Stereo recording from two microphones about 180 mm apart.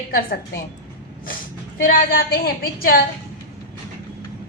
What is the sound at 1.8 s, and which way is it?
A woman's voice, 55° left (ahead or behind).